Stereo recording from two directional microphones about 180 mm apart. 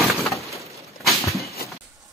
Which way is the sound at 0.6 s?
15° right (ahead or behind).